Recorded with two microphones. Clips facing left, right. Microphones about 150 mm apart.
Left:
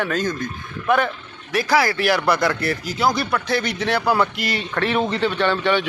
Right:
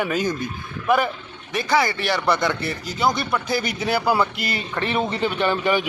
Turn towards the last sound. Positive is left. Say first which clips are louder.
# left 1 dB
turn(degrees=-5)  # may be behind; listen again after turning